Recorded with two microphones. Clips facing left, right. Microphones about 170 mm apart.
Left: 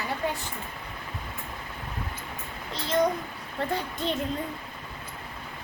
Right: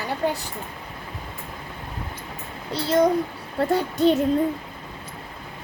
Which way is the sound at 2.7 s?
35° right (ahead or behind).